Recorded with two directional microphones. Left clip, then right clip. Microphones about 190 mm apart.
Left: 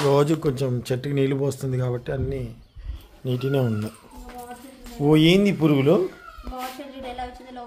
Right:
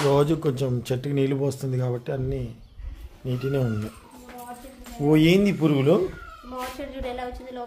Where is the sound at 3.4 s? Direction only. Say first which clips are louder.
Left 2 dB; 20° left (ahead or behind).